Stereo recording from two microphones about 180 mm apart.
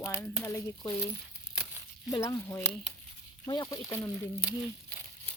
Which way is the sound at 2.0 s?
20° left (ahead or behind).